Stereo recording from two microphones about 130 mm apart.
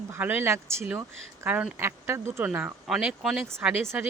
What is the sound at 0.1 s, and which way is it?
Speech, 15° right (ahead or behind).